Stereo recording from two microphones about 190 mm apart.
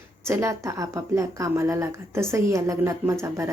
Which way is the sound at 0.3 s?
15° right (ahead or behind).